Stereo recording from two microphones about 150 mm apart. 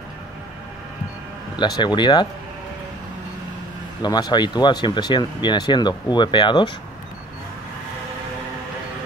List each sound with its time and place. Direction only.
1.6 s speech: 30° left (ahead or behind)
4.0 s speech: 30° left (ahead or behind)